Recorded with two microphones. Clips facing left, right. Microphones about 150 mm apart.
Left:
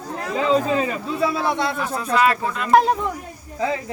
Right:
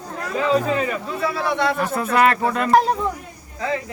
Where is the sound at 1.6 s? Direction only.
50° right (ahead or behind).